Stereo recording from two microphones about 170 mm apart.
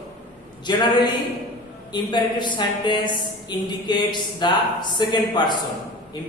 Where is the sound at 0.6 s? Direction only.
25° left (ahead or behind).